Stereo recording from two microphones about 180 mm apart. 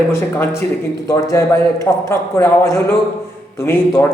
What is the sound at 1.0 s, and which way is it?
A man's voice, 15° left (ahead or behind).